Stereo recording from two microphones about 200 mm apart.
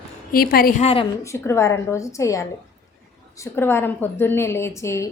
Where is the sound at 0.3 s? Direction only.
45° left (ahead or behind).